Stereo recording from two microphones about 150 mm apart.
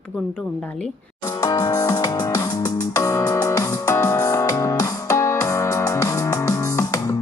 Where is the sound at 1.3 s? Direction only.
25° left (ahead or behind).